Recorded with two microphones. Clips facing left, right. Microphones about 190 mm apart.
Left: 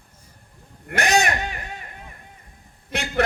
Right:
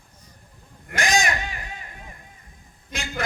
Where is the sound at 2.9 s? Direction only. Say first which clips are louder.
Left 8 dB; 65° left (ahead or behind).